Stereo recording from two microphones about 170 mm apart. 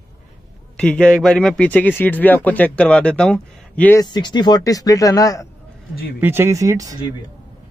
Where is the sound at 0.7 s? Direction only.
5° left (ahead or behind).